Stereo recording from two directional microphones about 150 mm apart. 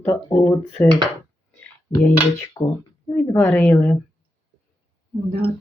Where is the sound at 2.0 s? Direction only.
15° left (ahead or behind).